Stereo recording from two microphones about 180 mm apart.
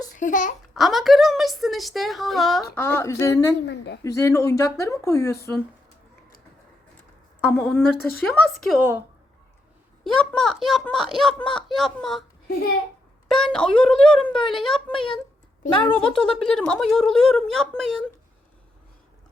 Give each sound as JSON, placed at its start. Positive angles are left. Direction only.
{"t": 0.2, "sound": "a child's voice", "side_deg": 45}
{"t": 0.7, "sound": "speech", "side_deg": 0}
{"t": 2.7, "sound": "speech", "side_deg": 10}
{"t": 3.7, "sound": "speech", "side_deg": 70}
{"t": 4.0, "sound": "speech", "side_deg": 15}
{"t": 7.5, "sound": "speech", "side_deg": 0}
{"t": 8.8, "sound": "a woman's voice", "side_deg": -10}
{"t": 10.0, "sound": "speech", "side_deg": 5}
{"t": 13.3, "sound": "speech", "side_deg": 5}
{"t": 15.7, "sound": "a woman's voice", "side_deg": 25}
{"t": 16.0, "sound": "speech", "side_deg": 5}